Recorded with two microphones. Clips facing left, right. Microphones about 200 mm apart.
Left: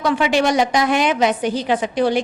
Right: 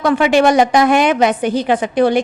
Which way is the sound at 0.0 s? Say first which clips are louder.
Right 5 dB; 55° right (ahead or behind).